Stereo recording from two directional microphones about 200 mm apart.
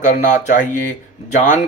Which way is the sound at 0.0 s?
40° left (ahead or behind).